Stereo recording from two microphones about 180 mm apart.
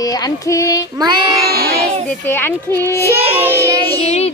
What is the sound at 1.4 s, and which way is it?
Child singing, 60° right (ahead or behind).